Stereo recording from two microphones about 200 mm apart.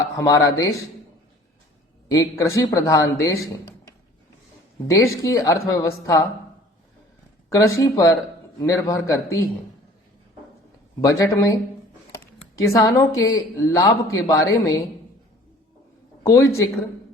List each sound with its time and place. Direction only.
0.2 s a woman's voice: 15° left (ahead or behind)
2.0 s a woman's voice: 15° left (ahead or behind)
4.9 s a woman's voice: 15° left (ahead or behind)
7.5 s a woman's voice: 15° left (ahead or behind)
11.0 s a woman's voice: 15° left (ahead or behind)
16.2 s a woman's voice: 15° left (ahead or behind)